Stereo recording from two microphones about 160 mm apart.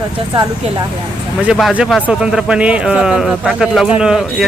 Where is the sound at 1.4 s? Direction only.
5° right (ahead or behind).